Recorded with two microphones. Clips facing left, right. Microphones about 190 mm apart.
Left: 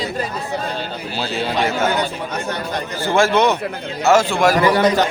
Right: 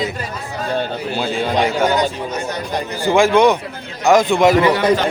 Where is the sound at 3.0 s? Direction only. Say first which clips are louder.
Right 3 dB; 15° right (ahead or behind).